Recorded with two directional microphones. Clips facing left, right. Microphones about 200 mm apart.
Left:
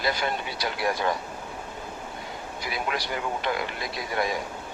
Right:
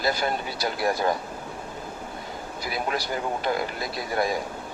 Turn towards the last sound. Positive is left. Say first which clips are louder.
# right 2 dB
turn(degrees=-35)  # may be behind; listen again after turning